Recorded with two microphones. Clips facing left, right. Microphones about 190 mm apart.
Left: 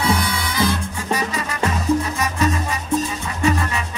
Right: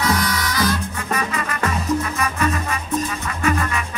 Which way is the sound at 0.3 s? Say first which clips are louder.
Even; 25° left (ahead or behind).